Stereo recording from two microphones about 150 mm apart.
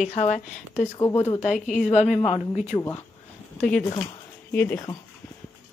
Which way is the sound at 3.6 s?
15° left (ahead or behind).